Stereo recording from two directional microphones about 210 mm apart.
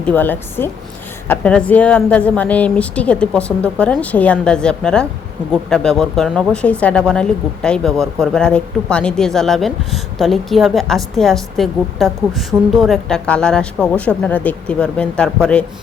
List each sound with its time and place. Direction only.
0.0 s a woman's voice: 10° left (ahead or behind)